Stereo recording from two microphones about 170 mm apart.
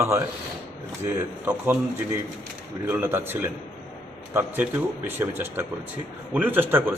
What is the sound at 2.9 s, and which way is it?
Speech, 10° right (ahead or behind).